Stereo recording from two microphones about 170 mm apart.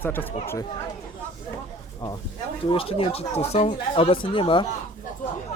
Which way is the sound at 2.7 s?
30° left (ahead or behind).